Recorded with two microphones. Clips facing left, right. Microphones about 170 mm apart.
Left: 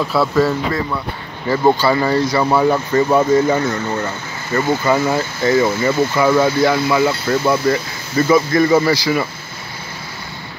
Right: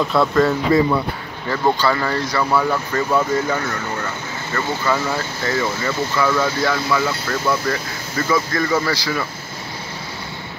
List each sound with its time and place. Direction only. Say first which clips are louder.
0.0 s speech: left 1 dB; 5° left (ahead or behind)